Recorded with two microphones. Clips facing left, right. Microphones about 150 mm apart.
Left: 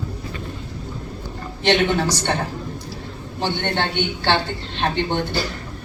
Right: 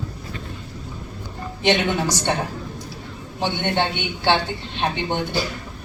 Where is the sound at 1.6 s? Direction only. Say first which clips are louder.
Left 2 dB; 10° right (ahead or behind).